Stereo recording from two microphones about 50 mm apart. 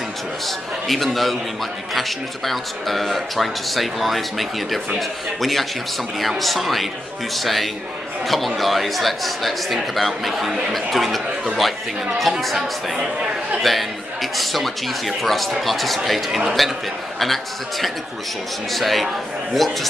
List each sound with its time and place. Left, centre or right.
0.5 s speech: centre